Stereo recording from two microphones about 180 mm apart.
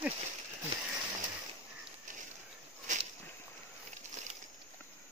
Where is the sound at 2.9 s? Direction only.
45° right (ahead or behind).